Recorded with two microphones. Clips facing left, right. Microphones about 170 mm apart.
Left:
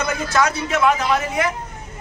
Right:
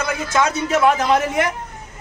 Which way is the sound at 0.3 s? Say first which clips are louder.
Even; 20° right (ahead or behind).